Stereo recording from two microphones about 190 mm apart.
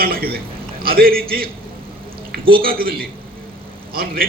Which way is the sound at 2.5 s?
50° right (ahead or behind).